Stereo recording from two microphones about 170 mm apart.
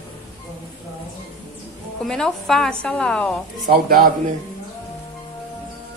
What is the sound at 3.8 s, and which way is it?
Speech, 60° right (ahead or behind).